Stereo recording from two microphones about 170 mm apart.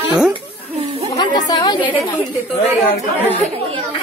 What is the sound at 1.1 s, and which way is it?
Speech, 25° left (ahead or behind).